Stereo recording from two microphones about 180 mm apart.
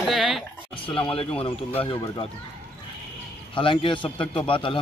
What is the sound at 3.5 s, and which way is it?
Speech, 30° left (ahead or behind).